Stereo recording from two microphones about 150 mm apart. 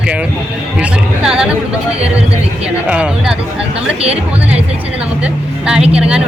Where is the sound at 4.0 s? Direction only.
40° right (ahead or behind).